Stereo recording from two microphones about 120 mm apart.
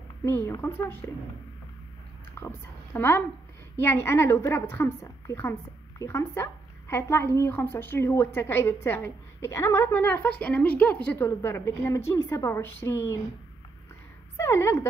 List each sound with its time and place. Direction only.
0.2 s a woman's voice: 20° left (ahead or behind)
2.4 s a woman's voice: 20° left (ahead or behind)
14.3 s a woman's voice: 20° left (ahead or behind)